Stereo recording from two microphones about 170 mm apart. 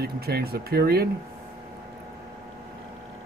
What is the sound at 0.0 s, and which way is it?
Speech, 65° right (ahead or behind).